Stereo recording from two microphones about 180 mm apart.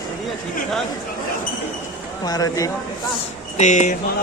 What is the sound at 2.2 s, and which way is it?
Speech, 20° left (ahead or behind).